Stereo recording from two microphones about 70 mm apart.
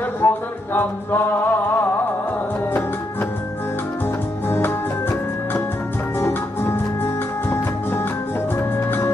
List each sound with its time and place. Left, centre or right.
0.2 s music: left
4.5 s music: left
6.1 s music: left